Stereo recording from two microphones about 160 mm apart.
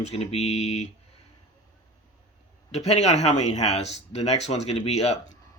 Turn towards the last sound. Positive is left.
turn(degrees=40)  # may be behind; listen again after turning